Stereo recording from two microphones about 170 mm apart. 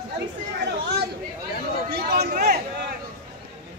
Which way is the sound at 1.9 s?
70° right (ahead or behind).